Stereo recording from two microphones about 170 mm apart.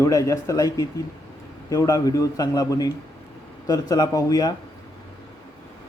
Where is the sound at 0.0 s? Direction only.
20° left (ahead or behind).